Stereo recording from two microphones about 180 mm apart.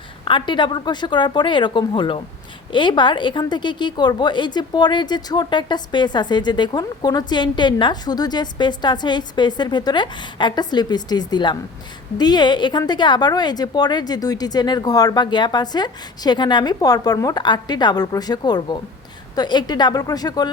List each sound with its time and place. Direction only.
0.3 s a woman's voice: 25° left (ahead or behind)